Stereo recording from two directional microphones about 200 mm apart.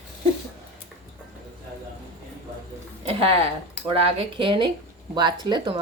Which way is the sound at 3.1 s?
30° right (ahead or behind).